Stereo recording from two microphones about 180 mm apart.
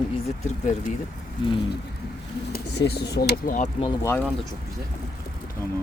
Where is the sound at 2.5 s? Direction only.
70° left (ahead or behind); by 3.7 s 50° left (ahead or behind).